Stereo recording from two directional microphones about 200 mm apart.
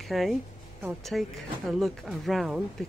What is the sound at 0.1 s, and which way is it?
Speech, centre (ahead or behind).